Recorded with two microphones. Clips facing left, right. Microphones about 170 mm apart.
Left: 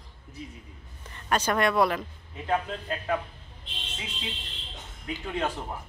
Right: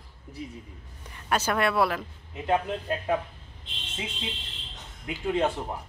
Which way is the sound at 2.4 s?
20° right (ahead or behind).